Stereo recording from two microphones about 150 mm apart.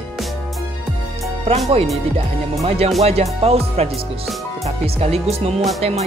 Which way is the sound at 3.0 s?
45° right (ahead or behind).